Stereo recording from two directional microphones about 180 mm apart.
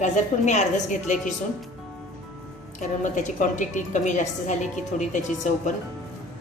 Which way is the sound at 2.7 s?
45° left (ahead or behind).